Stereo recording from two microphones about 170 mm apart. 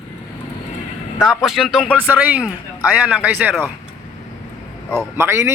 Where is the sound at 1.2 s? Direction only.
Centre (ahead or behind).